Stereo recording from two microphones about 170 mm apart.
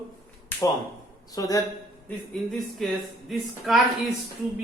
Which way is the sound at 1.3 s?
20° left (ahead or behind).